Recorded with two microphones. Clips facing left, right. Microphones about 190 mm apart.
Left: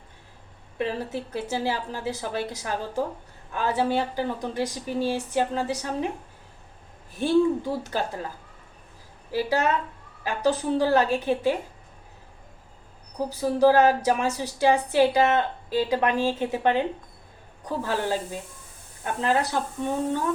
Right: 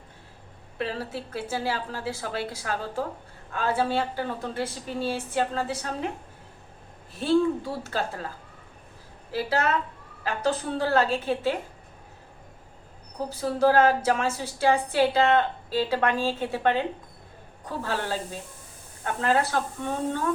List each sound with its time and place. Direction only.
0.8 s a woman's voice: 15° left (ahead or behind)
7.6 s a woman's voice: 15° left (ahead or behind)
9.3 s a woman's voice: 15° left (ahead or behind)
13.1 s a woman's voice: 15° left (ahead or behind)
17.8 s a woman's voice: 15° left (ahead or behind)